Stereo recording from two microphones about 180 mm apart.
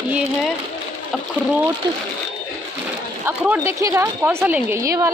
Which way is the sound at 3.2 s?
10° right (ahead or behind).